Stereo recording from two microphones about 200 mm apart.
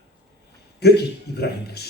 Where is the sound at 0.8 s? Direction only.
55° left (ahead or behind).